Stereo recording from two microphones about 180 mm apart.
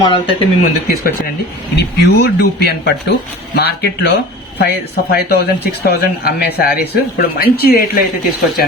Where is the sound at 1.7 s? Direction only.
65° left (ahead or behind).